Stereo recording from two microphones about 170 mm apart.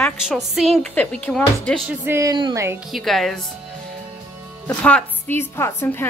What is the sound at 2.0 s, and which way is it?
Speech, 15° right (ahead or behind).